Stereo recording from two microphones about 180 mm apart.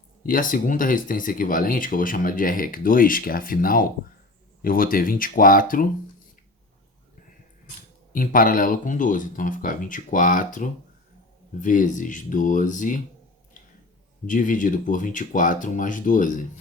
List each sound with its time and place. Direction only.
0.2 s speech: 50° left (ahead or behind)
8.1 s speech: 50° left (ahead or behind)
14.3 s speech: 45° left (ahead or behind)